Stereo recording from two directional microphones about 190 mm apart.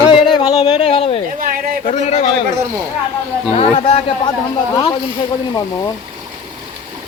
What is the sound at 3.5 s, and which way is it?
Speech, 35° left (ahead or behind).